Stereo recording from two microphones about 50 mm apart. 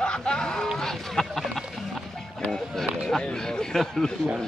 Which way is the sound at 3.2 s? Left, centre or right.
Centre.